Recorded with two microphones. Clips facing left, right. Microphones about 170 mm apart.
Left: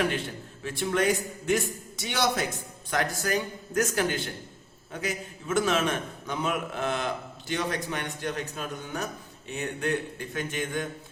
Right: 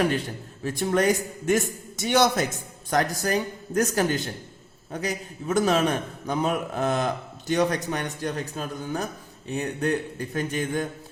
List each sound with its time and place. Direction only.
0.1 s a man's voice: 40° right (ahead or behind)